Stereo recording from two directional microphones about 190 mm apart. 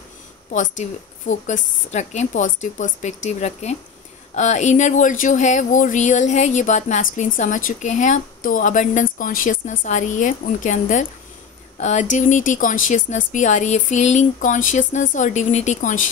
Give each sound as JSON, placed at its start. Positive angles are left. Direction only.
{"t": 0.5, "sound": "speech", "side_deg": 40}